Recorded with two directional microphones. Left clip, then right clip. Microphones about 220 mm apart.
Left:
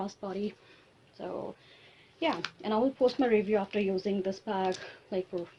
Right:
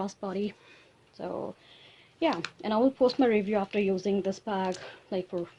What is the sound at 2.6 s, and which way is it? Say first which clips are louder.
Speech: right 3 dB; 45° right (ahead or behind).